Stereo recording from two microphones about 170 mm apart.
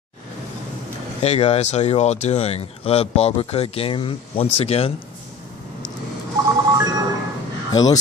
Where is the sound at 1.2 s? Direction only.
40° left (ahead or behind).